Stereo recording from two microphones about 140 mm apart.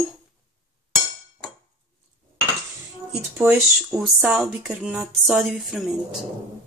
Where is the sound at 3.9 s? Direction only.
5° right (ahead or behind).